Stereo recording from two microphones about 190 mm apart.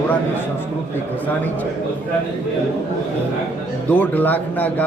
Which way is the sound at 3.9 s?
10° left (ahead or behind).